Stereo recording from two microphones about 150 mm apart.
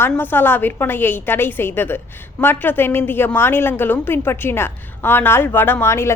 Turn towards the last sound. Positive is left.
turn(degrees=15)  # may be behind; listen again after turning